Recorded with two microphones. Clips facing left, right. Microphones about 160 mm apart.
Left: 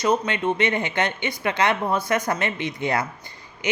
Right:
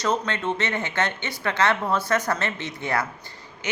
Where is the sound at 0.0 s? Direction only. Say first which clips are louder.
Left 3 dB; 10° left (ahead or behind).